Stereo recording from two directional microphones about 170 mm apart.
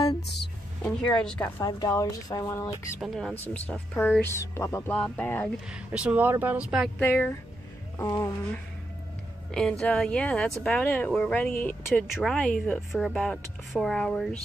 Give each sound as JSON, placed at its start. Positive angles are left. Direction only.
{"t": 0.8, "sound": "a woman's voice", "side_deg": 5}
{"t": 1.6, "sound": "speech", "side_deg": 20}
{"t": 3.0, "sound": "a woman's voice", "side_deg": 5}
{"t": 5.7, "sound": "speech", "side_deg": -5}
{"t": 7.0, "sound": "speech", "side_deg": 10}
{"t": 9.5, "sound": "a woman's voice", "side_deg": 5}